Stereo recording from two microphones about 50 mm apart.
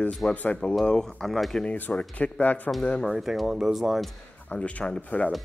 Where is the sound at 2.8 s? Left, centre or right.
Centre.